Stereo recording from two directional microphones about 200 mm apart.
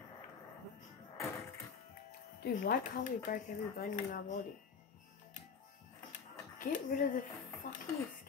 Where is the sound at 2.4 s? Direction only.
50° left (ahead or behind).